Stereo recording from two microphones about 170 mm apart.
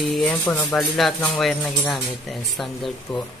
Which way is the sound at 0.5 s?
15° left (ahead or behind).